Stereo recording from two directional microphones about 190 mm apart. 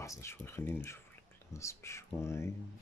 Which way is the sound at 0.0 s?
15° left (ahead or behind).